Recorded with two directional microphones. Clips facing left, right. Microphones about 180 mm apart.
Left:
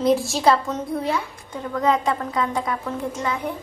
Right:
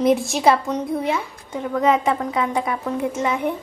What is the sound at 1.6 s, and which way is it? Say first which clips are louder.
A woman's voice: right 2 dB; 20° right (ahead or behind).